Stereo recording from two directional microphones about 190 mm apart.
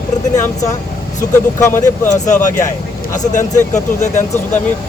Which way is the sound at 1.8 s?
40° left (ahead or behind).